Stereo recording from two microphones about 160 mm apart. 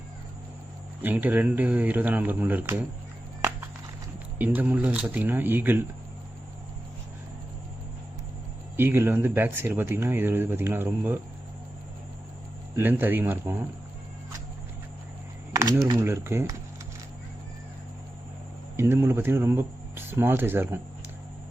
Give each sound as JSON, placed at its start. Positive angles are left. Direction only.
{"t": 1.0, "sound": "speech", "side_deg": -10}
{"t": 4.4, "sound": "speech", "side_deg": -10}
{"t": 8.7, "sound": "speech", "side_deg": -15}
{"t": 12.7, "sound": "speech", "side_deg": -10}
{"t": 16.0, "sound": "speech", "side_deg": -15}
{"t": 18.8, "sound": "speech", "side_deg": -15}